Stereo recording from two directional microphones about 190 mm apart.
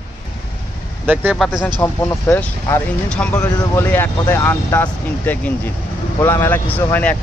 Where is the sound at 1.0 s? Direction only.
10° right (ahead or behind).